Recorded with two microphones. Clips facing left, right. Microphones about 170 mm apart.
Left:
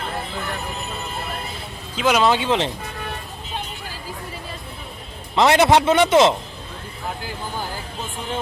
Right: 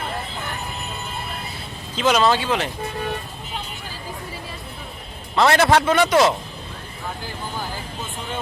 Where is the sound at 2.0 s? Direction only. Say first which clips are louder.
Even; 10° left (ahead or behind).